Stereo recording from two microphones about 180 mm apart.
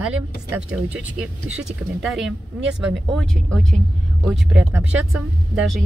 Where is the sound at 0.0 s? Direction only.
5° right (ahead or behind).